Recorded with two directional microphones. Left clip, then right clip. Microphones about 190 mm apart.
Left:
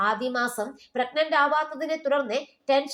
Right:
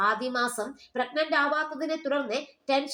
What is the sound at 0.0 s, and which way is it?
A woman's voice, 25° left (ahead or behind).